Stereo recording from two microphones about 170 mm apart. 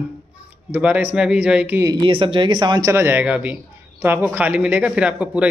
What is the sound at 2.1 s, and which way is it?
Speech, 30° right (ahead or behind).